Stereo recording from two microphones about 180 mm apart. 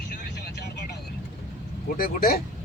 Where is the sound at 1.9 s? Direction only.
55° left (ahead or behind).